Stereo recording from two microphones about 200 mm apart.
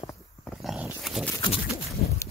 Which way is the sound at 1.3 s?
25° left (ahead or behind).